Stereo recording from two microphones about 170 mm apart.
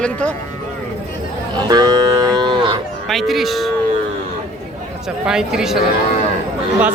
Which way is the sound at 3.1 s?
Centre (ahead or behind).